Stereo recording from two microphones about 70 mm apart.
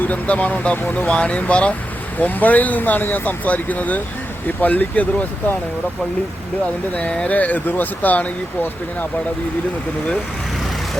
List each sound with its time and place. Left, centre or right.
0.0 s speech: left
1.0 s speech: centre
6.9 s speech: centre